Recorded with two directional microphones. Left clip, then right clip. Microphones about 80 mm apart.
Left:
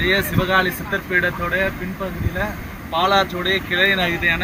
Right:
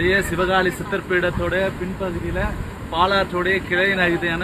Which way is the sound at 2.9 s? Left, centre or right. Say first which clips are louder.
Left 1 dB; right.